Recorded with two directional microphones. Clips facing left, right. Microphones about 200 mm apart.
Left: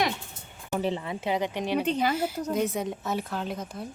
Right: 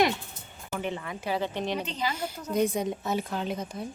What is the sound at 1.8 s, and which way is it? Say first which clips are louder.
Speech: left 6 dB; 55° left (ahead or behind).